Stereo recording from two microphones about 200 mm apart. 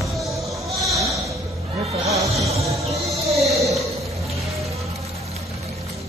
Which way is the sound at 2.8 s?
30° right (ahead or behind).